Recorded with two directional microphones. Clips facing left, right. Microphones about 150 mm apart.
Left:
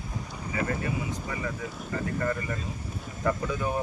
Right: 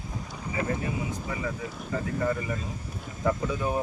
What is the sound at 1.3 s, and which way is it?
Speech, 5° right (ahead or behind).